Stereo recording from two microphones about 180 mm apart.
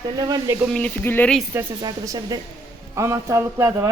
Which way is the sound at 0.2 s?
20° right (ahead or behind).